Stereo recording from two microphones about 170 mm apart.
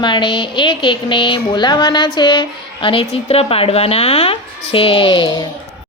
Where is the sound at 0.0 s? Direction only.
30° left (ahead or behind).